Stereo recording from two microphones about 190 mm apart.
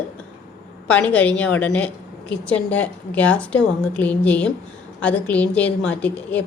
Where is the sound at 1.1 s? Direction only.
5° left (ahead or behind).